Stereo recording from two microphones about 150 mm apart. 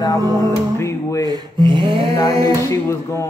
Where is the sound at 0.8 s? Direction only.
20° left (ahead or behind).